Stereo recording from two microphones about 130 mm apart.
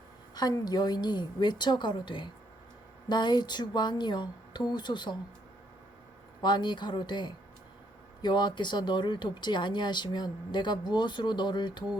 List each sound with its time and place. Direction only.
0.3 s speech: 30° left (ahead or behind)
6.4 s speech: 35° left (ahead or behind)